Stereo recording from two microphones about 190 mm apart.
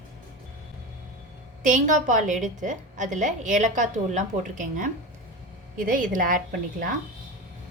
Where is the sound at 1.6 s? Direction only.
40° right (ahead or behind).